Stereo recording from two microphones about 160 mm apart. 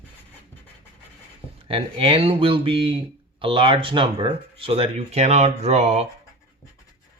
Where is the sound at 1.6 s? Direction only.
35° right (ahead or behind).